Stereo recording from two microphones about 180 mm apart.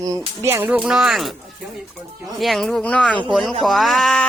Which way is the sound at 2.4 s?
Centre (ahead or behind).